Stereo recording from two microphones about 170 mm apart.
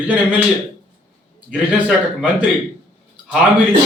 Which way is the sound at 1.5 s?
5° right (ahead or behind).